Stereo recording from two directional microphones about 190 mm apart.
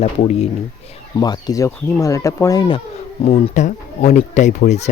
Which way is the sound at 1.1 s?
20° left (ahead or behind).